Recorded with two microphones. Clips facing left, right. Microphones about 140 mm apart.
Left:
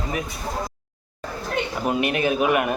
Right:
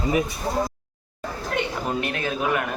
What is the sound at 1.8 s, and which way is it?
Speech, 15° left (ahead or behind).